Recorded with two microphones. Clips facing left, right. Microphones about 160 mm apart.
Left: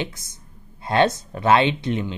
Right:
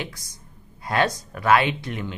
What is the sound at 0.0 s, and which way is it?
Speech, 20° left (ahead or behind).